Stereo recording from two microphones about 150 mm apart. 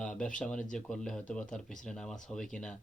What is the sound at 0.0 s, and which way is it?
Speech, 5° left (ahead or behind).